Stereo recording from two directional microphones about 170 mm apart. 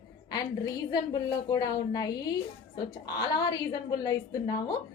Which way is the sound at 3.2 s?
25° left (ahead or behind).